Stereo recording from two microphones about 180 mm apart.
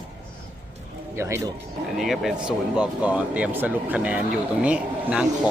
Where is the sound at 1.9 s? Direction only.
Centre (ahead or behind).